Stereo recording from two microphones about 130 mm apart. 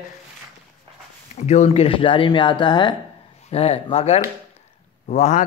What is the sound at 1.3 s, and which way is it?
Speech, 60° left (ahead or behind).